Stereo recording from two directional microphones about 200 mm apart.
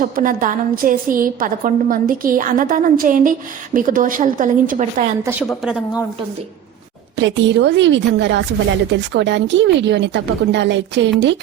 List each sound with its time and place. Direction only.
0.0 s a woman's voice: 45° right (ahead or behind)
5.2 s a woman's voice: 10° right (ahead or behind)
7.2 s a woman's voice: 65° right (ahead or behind)